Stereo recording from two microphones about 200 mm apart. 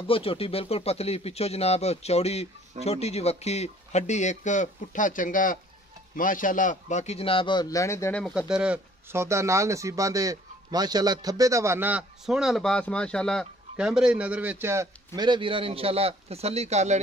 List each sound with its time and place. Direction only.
0.0 s a man's voice: 25° left (ahead or behind); by 17.0 s 35° right (ahead or behind)